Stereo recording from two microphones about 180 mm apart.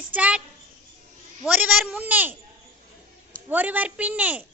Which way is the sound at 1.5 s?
10° right (ahead or behind).